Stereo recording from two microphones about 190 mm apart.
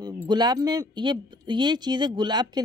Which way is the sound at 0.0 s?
20° right (ahead or behind).